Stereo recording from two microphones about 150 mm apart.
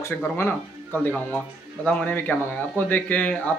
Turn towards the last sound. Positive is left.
turn(degrees=10)  # may be behind; listen again after turning